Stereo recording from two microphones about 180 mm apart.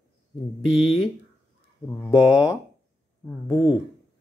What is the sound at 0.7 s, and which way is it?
Speech, 35° left (ahead or behind).